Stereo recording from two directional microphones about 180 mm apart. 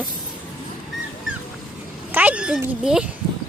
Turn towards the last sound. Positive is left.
turn(degrees=-5)  # may be behind; listen again after turning